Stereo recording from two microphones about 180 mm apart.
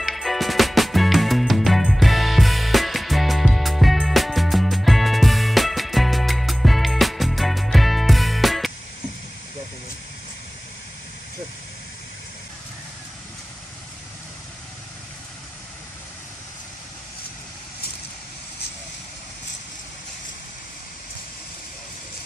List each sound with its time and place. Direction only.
0.0 s music: centre (ahead or behind)